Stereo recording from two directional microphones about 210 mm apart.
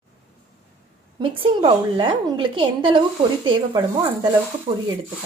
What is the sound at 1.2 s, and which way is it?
Speech, 25° right (ahead or behind).